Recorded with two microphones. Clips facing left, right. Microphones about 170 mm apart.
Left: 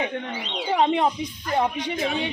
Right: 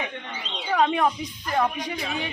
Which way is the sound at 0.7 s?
25° left (ahead or behind).